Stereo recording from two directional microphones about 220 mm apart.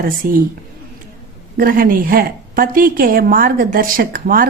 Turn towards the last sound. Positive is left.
turn(degrees=-40)  # may be behind; listen again after turning